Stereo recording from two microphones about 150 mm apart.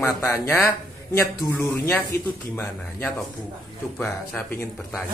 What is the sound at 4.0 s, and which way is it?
Speech, 10° left (ahead or behind).